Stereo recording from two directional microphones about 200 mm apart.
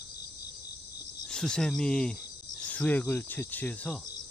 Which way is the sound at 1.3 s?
5° left (ahead or behind).